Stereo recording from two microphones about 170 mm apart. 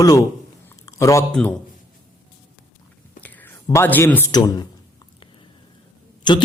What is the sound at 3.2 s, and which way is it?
Whispering, 10° left (ahead or behind).